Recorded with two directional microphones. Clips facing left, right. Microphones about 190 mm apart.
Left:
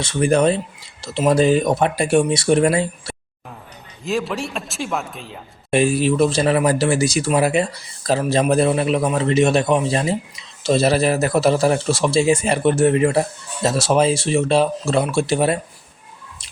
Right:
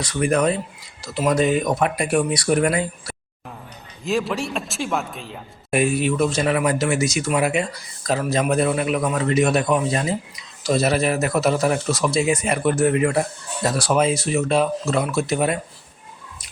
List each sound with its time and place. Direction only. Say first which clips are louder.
0.0 s a man's voice: left 3 dB; 25° left (ahead or behind)
4.0 s speech: even; centre (ahead or behind)
5.7 s a man's voice: left 3 dB; 30° left (ahead or behind)